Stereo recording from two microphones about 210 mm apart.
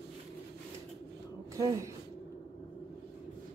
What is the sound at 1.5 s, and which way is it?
Speech, 15° right (ahead or behind).